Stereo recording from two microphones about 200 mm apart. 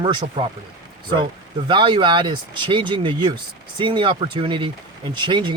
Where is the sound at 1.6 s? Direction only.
25° right (ahead or behind).